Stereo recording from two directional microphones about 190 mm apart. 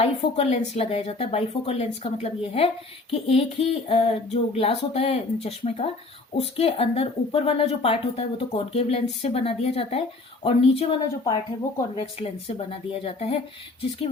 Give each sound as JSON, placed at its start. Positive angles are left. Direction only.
{"t": 0.0, "sound": "a woman's voice", "side_deg": 30}